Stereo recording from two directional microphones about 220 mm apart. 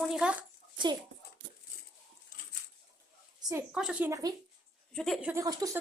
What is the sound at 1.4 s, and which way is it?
Dog, 60° right (ahead or behind).